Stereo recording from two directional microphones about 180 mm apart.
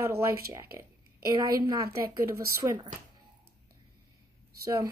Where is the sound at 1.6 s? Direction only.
20° right (ahead or behind).